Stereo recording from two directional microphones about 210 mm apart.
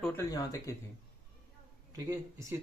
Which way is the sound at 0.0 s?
10° left (ahead or behind).